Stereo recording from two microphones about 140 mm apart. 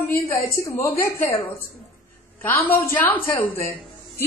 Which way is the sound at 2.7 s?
15° left (ahead or behind).